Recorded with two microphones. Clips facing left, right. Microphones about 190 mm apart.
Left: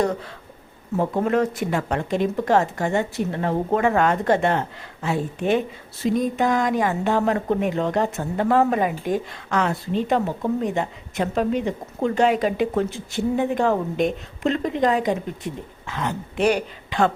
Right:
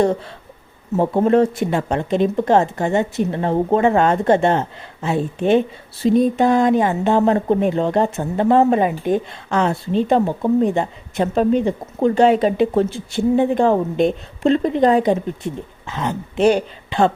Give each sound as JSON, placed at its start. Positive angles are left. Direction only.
{"t": 0.9, "sound": "speech", "side_deg": -30}